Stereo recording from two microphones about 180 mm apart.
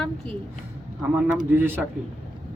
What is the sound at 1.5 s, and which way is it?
Speech, 10° right (ahead or behind).